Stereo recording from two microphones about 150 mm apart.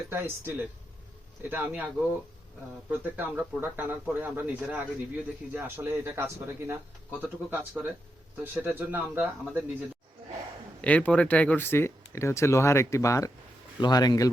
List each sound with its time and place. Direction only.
0.1 s speech: 15° right (ahead or behind)
2.9 s speech: 10° right (ahead or behind)
10.8 s speech: 10° left (ahead or behind); by 14.3 s 25° left (ahead or behind)